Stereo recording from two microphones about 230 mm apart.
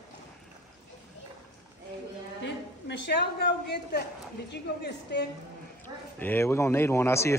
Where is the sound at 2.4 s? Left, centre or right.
Left.